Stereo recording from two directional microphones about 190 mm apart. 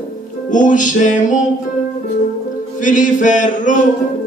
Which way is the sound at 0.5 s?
40° left (ahead or behind).